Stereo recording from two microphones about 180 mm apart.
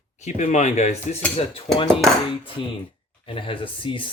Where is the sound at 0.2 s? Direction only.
40° left (ahead or behind).